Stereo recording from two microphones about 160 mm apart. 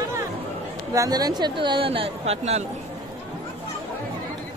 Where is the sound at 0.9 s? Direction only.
20° right (ahead or behind); by 2.6 s 40° right (ahead or behind).